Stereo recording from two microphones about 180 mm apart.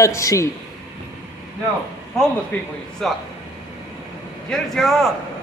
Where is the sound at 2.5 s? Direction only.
10° left (ahead or behind).